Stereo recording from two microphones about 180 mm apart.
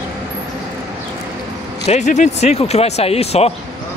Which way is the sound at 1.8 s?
40° left (ahead or behind).